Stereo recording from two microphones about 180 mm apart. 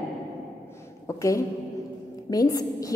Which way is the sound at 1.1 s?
15° left (ahead or behind).